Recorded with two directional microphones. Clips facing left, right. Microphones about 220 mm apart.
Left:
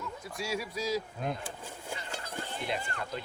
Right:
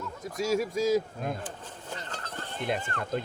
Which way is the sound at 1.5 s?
10° left (ahead or behind).